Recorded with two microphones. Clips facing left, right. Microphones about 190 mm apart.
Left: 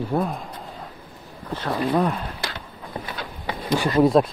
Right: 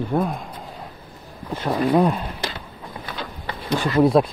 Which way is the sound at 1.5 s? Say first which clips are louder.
Right 3 dB; 10° right (ahead or behind).